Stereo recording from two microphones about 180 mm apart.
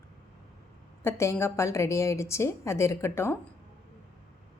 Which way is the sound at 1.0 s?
15° left (ahead or behind).